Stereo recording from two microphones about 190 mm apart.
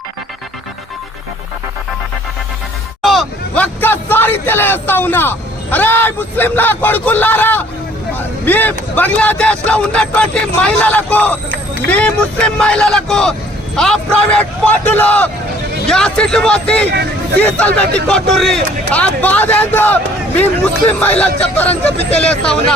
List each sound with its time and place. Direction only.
3.0 s speech: centre (ahead or behind)
16.9 s speech: 60° right (ahead or behind)
17.4 s speech: 5° left (ahead or behind)